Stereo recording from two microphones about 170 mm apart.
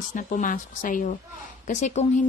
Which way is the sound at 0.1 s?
50° left (ahead or behind).